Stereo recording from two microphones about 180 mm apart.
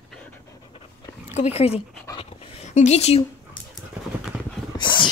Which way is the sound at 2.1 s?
35° left (ahead or behind).